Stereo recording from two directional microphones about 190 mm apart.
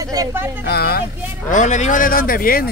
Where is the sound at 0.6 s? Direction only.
55° left (ahead or behind).